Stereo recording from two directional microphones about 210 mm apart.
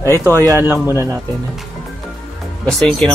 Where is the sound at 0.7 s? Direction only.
15° left (ahead or behind).